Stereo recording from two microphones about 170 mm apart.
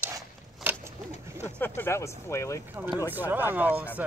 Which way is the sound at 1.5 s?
10° left (ahead or behind).